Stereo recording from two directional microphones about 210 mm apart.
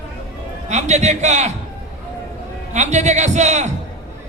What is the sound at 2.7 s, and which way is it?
A man's voice, 35° right (ahead or behind).